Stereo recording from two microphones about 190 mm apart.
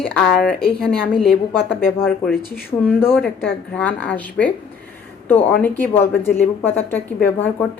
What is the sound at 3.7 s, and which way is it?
Speech, 5° left (ahead or behind).